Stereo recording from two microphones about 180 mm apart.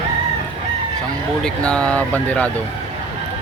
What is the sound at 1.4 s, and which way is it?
Speech, 5° left (ahead or behind).